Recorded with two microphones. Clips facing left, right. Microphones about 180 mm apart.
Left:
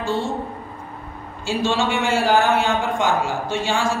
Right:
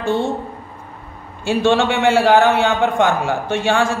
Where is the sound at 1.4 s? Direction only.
60° right (ahead or behind).